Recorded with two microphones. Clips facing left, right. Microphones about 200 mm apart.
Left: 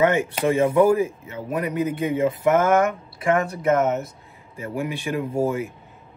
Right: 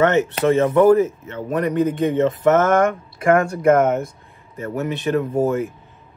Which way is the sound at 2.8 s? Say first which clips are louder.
Right 4 dB; 50° right (ahead or behind).